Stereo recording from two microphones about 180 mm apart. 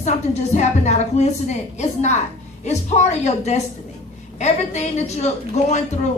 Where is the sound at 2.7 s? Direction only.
40° left (ahead or behind).